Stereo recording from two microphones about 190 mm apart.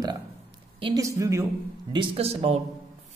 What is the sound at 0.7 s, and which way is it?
A man's voice, 25° right (ahead or behind).